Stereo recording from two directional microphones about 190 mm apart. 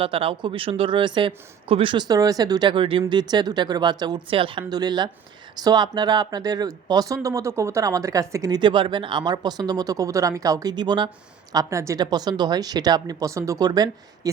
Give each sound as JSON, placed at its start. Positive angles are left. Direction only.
{"t": 0.0, "sound": "speech", "side_deg": -30}